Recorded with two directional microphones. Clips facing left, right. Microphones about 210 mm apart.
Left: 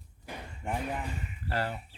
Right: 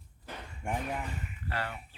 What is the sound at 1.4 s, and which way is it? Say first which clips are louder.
Speech: left 4 dB; 35° left (ahead or behind).